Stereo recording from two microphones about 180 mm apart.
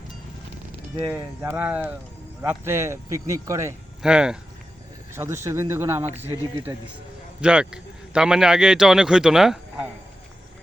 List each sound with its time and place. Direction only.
1.4 s speech: 10° right (ahead or behind)
4.0 s speech: 5° right (ahead or behind)
5.1 s speech: 15° right (ahead or behind)
7.4 s speech: 5° right (ahead or behind)